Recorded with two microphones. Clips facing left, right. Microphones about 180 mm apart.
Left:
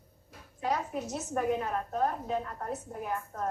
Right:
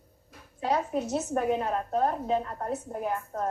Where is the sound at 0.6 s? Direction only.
30° right (ahead or behind).